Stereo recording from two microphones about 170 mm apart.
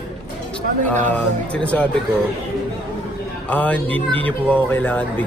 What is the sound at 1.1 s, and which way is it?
Speech, 5° left (ahead or behind).